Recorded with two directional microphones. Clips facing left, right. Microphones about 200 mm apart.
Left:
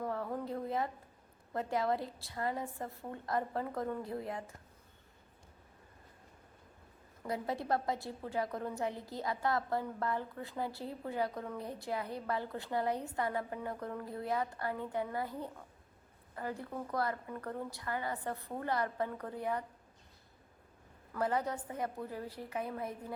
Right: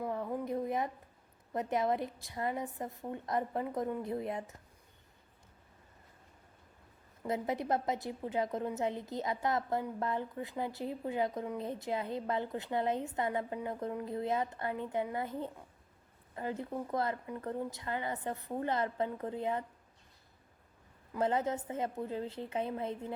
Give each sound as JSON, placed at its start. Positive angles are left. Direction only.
{"t": 0.0, "sound": "a sound", "side_deg": -15}
{"t": 1.5, "sound": "a woman's voice", "side_deg": -20}
{"t": 7.3, "sound": "a woman's voice", "side_deg": -20}
{"t": 21.1, "sound": "a woman's voice", "side_deg": -25}